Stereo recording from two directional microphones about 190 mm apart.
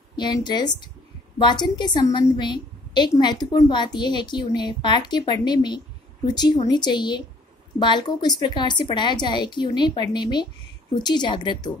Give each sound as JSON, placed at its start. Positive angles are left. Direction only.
{"t": 0.1, "sound": "a woman's voice", "side_deg": 25}